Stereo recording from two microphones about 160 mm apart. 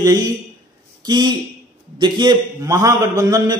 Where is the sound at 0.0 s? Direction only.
25° right (ahead or behind).